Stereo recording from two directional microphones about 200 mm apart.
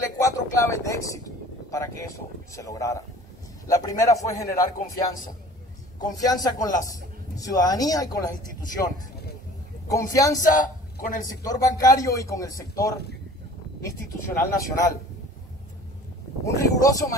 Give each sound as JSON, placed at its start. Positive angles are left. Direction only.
{"t": 0.2, "sound": "a sound", "side_deg": 15}
{"t": 2.5, "sound": "a man's voice", "side_deg": 15}
{"t": 10.4, "sound": "a man's voice", "side_deg": 40}
{"t": 11.4, "sound": "a man's voice", "side_deg": 20}
{"t": 16.4, "sound": "a man's voice", "side_deg": 15}